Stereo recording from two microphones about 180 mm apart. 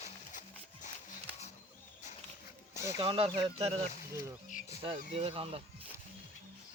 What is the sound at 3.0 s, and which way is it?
Speech, 30° right (ahead or behind).